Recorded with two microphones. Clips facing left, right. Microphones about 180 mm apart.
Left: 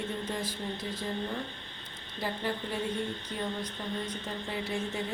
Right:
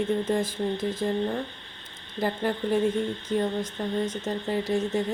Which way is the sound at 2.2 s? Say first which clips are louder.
Right 7 dB; 50° right (ahead or behind).